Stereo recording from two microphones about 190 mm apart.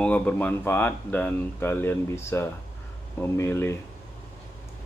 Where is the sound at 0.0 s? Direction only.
10° left (ahead or behind).